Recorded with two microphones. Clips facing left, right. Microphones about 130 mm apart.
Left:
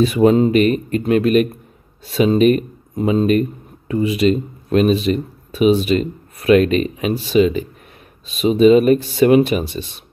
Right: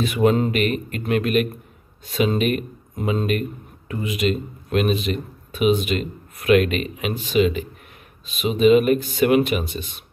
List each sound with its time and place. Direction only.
0.0 s speech: 30° left (ahead or behind)